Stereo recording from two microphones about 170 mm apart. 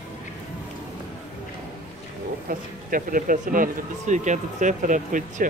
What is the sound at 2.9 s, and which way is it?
Speech, 55° right (ahead or behind).